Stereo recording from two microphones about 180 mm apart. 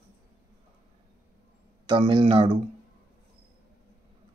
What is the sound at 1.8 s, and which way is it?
Speech, 25° right (ahead or behind).